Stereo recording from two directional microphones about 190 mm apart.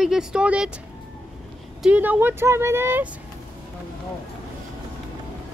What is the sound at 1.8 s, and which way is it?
Speech, 10° right (ahead or behind).